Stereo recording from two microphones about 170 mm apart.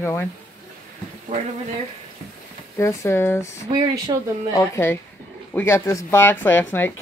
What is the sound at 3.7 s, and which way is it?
Speech, 25° right (ahead or behind).